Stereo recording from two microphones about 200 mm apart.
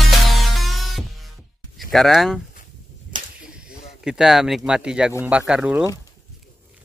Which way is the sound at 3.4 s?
5° right (ahead or behind).